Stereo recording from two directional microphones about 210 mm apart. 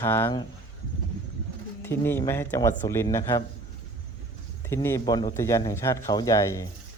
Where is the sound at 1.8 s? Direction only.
10° left (ahead or behind).